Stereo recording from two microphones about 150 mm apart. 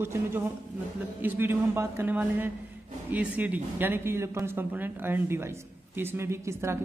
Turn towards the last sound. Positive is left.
turn(degrees=-20)  # may be behind; listen again after turning